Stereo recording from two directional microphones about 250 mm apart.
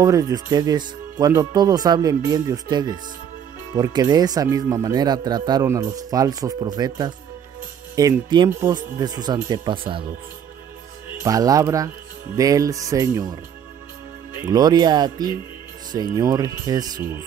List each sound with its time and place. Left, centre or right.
0.0 s speech: centre
11.2 s speech: centre
14.4 s speech: centre